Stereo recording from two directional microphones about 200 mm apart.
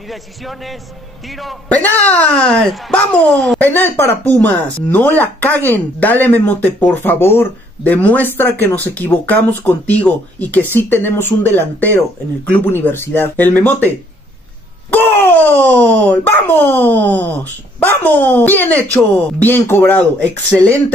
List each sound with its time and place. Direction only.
0.1 s a man's voice: centre (ahead or behind)